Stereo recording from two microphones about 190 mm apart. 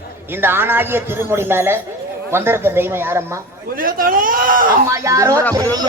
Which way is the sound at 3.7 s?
50° right (ahead or behind).